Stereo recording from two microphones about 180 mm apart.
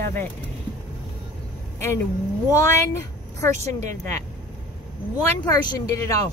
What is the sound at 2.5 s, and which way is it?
Speech, 15° left (ahead or behind).